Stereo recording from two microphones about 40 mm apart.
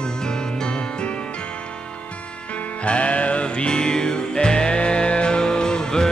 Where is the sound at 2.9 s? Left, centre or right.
Left.